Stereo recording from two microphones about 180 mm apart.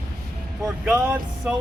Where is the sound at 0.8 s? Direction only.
10° right (ahead or behind).